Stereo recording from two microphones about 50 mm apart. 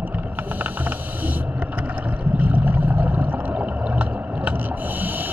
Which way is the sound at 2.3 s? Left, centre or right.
Right.